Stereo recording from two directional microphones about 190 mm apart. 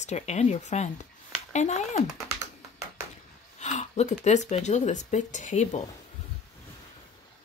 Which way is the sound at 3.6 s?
35° left (ahead or behind).